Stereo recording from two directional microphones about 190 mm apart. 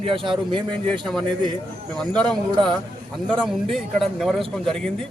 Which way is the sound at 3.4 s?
Centre (ahead or behind).